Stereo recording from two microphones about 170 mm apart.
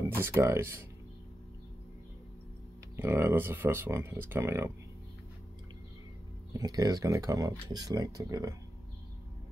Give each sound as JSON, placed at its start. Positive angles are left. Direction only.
{"t": 0.2, "sound": "speech", "side_deg": -15}
{"t": 3.0, "sound": "speech", "side_deg": -15}
{"t": 6.5, "sound": "speech", "side_deg": -20}